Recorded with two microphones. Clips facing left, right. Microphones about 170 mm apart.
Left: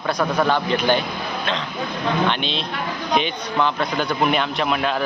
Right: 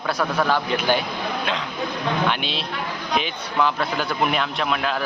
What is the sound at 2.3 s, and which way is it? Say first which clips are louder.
A man's voice: left 2 dB; 5° right (ahead or behind).